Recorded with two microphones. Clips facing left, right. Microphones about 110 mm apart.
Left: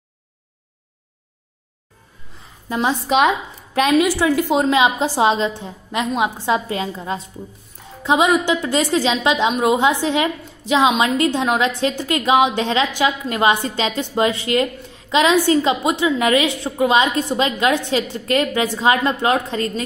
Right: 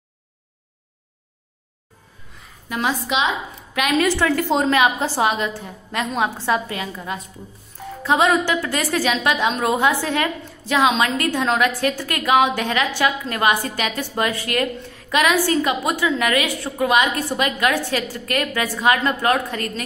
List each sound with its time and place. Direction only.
2.7 s a woman's voice: 25° left (ahead or behind)
4.0 s a woman's voice: 15° left (ahead or behind)
6.7 s a woman's voice: 30° left (ahead or behind)
8.0 s a woman's voice: 15° left (ahead or behind)